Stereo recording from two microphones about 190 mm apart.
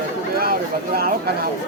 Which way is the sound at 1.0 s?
55° right (ahead or behind).